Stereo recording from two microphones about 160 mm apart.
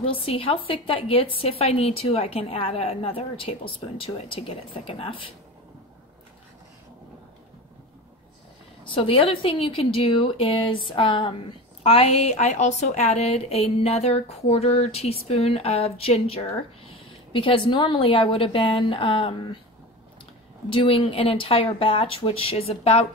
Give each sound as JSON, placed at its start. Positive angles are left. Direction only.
{"t": 0.0, "sound": "a woman's voice", "side_deg": 35}
{"t": 8.8, "sound": "a woman's voice", "side_deg": 35}
{"t": 20.7, "sound": "a woman's voice", "side_deg": 35}